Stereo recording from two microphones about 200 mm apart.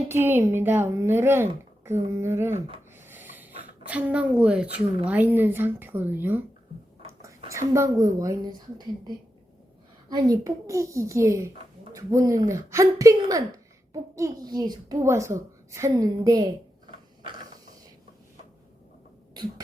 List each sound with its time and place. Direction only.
0.1 s a child's voice: 10° right (ahead or behind)
2.6 s speech: 25° right (ahead or behind)
3.1 s a sound: 10° right (ahead or behind)
5.0 s a child's voice: 10° right (ahead or behind)
10.1 s a child's voice: 20° right (ahead or behind)
17.2 s mechanisms: 20° right (ahead or behind)
19.3 s a sound: 20° right (ahead or behind)